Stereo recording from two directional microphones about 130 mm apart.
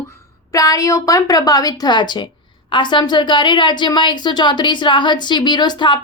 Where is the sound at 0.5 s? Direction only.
25° left (ahead or behind).